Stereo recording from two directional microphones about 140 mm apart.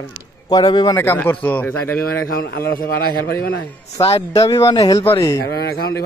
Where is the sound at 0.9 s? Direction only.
15° left (ahead or behind).